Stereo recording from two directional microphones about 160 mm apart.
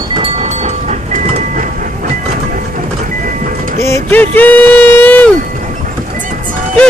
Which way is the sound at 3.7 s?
15° left (ahead or behind).